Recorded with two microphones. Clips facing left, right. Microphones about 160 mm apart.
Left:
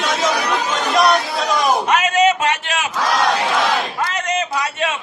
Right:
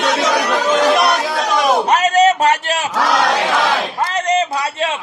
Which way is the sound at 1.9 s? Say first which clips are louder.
Right 3 dB; 35° right (ahead or behind).